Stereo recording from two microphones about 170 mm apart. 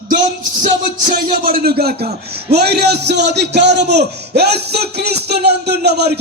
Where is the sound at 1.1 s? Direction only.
55° right (ahead or behind).